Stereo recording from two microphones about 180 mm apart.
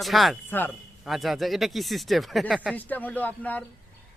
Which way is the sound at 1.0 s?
Centre (ahead or behind).